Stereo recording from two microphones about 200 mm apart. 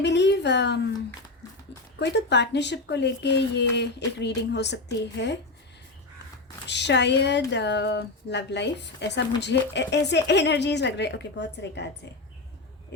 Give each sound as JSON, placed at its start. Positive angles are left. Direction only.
{"t": 0.0, "sound": "speech", "side_deg": 60}
{"t": 2.0, "sound": "speech", "side_deg": 60}
{"t": 6.7, "sound": "speech", "side_deg": 60}